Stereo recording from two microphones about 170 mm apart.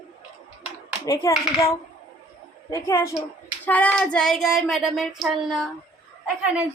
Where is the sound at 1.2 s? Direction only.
15° left (ahead or behind).